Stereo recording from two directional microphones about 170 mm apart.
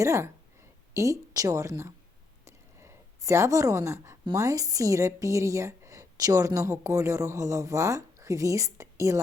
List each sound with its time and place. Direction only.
0.0 s a woman's voice: 15° right (ahead or behind)
2.4 s a sound: 15° right (ahead or behind)
4.3 s a woman's voice: 20° right (ahead or behind)